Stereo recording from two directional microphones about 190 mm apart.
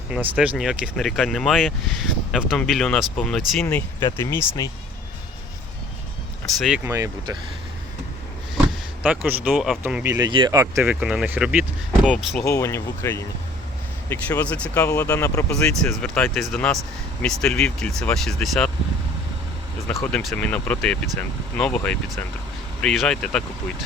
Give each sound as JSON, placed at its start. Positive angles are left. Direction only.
{"t": 0.1, "sound": "speech", "side_deg": -5}
{"t": 6.6, "sound": "speech", "side_deg": -5}
{"t": 6.9, "sound": "speech", "side_deg": -15}
{"t": 9.0, "sound": "speech", "side_deg": -10}
{"t": 11.0, "sound": "speech", "side_deg": -5}
{"t": 12.5, "sound": "speech", "side_deg": 15}
{"t": 14.8, "sound": "speech", "side_deg": 15}
{"t": 15.6, "sound": "speech", "side_deg": 5}
{"t": 20.0, "sound": "speech", "side_deg": 10}